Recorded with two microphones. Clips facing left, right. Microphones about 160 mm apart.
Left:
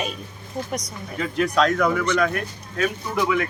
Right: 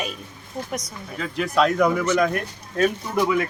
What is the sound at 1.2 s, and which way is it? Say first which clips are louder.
Speech: even; centre (ahead or behind).